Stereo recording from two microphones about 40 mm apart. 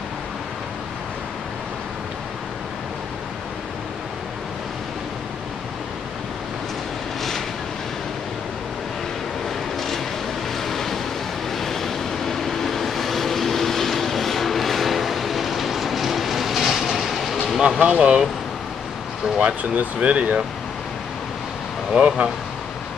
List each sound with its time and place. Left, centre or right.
10.6 s vehicle: centre
17.6 s speech: right
19.4 s speech: right
21.9 s speech: right